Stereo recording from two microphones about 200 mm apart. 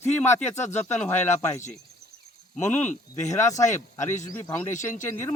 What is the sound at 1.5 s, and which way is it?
Speech, 35° left (ahead or behind).